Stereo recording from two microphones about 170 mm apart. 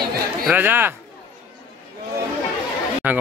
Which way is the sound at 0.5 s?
10° right (ahead or behind).